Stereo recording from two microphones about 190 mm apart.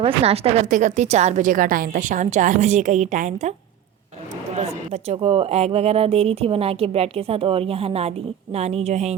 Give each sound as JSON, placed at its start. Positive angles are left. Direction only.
{"t": 0.0, "sound": "a woman's voice", "side_deg": -30}
{"t": 5.0, "sound": "a woman's voice", "side_deg": -30}